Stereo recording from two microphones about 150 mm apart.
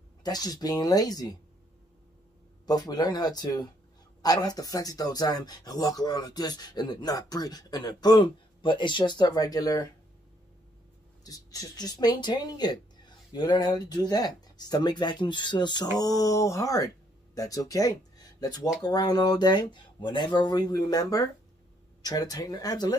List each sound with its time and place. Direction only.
0.2 s speech: 25° left (ahead or behind)
2.6 s speech: 25° left (ahead or behind)
11.2 s speech: 25° left (ahead or behind)